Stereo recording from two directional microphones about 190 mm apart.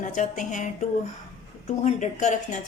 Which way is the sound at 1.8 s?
40° left (ahead or behind).